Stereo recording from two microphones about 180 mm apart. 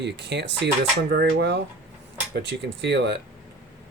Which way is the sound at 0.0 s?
70° right (ahead or behind).